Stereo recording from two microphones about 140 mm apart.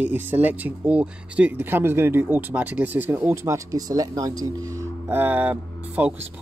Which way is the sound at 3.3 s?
25° right (ahead or behind).